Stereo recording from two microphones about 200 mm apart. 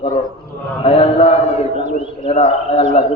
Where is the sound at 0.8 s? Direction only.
30° left (ahead or behind).